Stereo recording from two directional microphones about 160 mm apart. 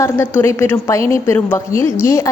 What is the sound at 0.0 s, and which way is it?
A woman's voice, 15° left (ahead or behind).